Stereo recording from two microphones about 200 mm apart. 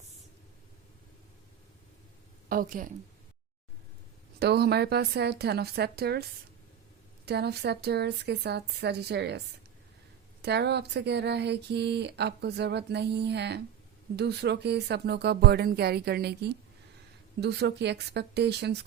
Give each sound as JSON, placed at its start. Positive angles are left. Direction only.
{"t": 2.5, "sound": "a woman's voice", "side_deg": -45}
{"t": 4.4, "sound": "a woman's voice", "side_deg": -55}
{"t": 7.3, "sound": "speech", "side_deg": -55}
{"t": 10.4, "sound": "speech", "side_deg": -55}